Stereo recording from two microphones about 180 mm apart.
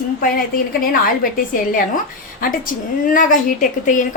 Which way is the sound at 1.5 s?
50° left (ahead or behind).